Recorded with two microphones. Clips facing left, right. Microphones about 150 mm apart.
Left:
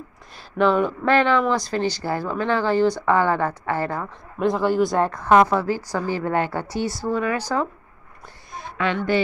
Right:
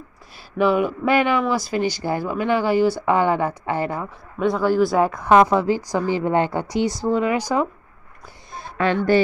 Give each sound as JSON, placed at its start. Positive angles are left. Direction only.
{"t": 0.6, "sound": "speech", "side_deg": -10}
{"t": 4.4, "sound": "speech", "side_deg": 0}
{"t": 8.5, "sound": "a woman's voice", "side_deg": -40}